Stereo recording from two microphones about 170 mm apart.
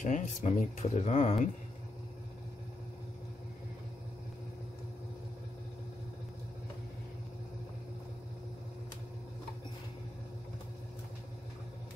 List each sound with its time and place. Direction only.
0.0 s speech: 45° left (ahead or behind)